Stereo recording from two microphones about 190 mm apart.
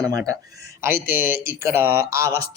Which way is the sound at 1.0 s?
10° right (ahead or behind).